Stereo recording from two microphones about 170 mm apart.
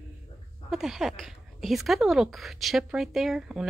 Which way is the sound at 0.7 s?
Centre (ahead or behind).